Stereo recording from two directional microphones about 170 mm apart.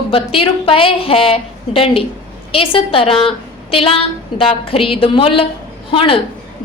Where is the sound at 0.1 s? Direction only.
30° left (ahead or behind).